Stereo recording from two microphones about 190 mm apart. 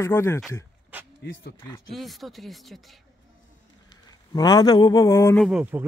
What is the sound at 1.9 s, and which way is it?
Speech, centre (ahead or behind).